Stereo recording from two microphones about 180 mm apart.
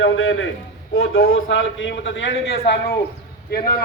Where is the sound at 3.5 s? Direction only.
55° left (ahead or behind).